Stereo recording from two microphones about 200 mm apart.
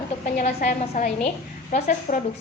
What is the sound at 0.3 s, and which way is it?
A woman's voice, 45° left (ahead or behind).